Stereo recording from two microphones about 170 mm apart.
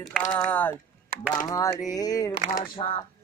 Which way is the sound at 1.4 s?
20° left (ahead or behind).